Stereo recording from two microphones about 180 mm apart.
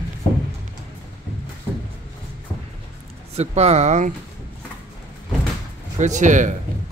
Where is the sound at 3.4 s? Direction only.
35° right (ahead or behind).